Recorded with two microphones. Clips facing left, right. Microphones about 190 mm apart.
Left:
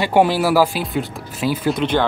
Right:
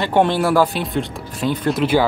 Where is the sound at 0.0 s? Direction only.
10° left (ahead or behind).